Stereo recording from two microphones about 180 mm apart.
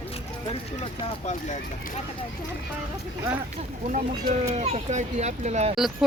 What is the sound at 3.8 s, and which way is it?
Speech, 45° right (ahead or behind).